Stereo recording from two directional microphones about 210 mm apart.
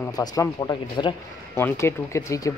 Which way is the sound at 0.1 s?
15° left (ahead or behind).